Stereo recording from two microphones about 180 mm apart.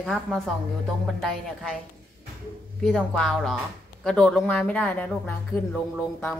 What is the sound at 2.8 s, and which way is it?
A woman's voice, 5° left (ahead or behind).